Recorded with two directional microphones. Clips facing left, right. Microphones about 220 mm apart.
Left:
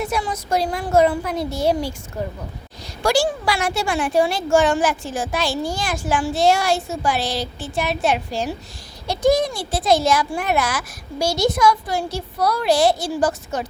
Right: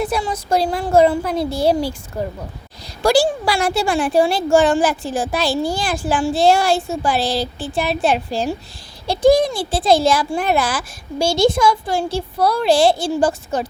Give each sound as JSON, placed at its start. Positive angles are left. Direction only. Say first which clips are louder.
{"t": 0.0, "sound": "a woman's voice", "louder": "right 3 dB", "side_deg": -30}